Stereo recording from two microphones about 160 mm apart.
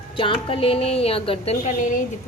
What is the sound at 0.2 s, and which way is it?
A woman's voice, 35° left (ahead or behind).